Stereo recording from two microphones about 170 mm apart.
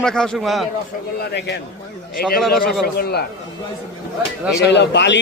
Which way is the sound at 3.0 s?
70° left (ahead or behind).